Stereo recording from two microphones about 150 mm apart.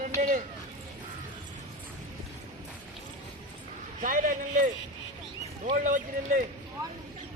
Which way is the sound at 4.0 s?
60° right (ahead or behind).